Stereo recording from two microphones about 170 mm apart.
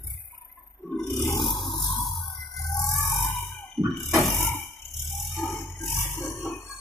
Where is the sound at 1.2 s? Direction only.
20° left (ahead or behind).